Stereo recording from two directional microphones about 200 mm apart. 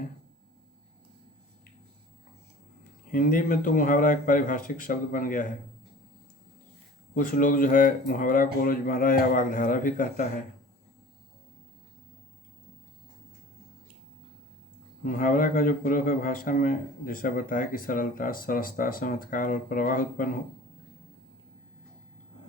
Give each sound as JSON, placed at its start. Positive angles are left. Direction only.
{"t": 3.1, "sound": "a man's voice", "side_deg": 45}
{"t": 7.1, "sound": "a man's voice", "side_deg": 45}
{"t": 15.0, "sound": "a man's voice", "side_deg": 40}